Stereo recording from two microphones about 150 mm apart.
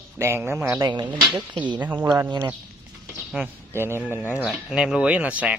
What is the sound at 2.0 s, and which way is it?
Speech, 25° right (ahead or behind).